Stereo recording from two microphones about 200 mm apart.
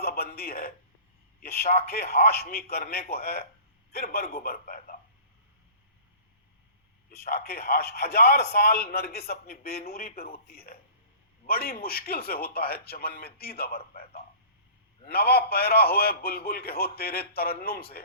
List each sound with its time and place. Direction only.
0.0 s a sound: 50° left (ahead or behind)
1.4 s a man's voice: 50° left (ahead or behind)
7.1 s a man's voice: 50° left (ahead or behind)